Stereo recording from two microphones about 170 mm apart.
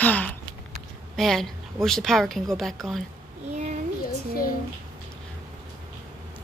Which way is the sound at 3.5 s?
40° right (ahead or behind).